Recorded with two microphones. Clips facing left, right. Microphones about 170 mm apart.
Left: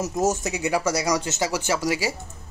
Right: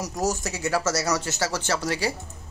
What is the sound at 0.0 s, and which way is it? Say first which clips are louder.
Speech: left 4 dB; 20° left (ahead or behind).